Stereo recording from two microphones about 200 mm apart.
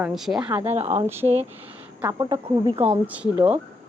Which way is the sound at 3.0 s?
5° right (ahead or behind).